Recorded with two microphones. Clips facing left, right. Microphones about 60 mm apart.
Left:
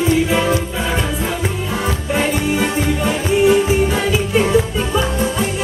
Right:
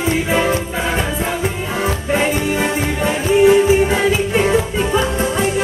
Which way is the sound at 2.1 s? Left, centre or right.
Right.